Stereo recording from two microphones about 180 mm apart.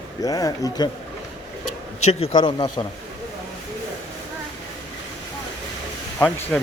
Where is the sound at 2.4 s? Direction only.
25° left (ahead or behind).